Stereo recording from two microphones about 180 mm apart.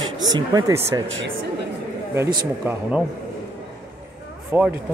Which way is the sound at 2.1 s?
10° right (ahead or behind).